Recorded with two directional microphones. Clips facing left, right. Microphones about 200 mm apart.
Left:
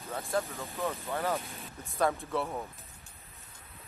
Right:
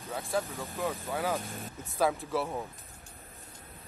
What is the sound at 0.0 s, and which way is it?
Speech, centre (ahead or behind).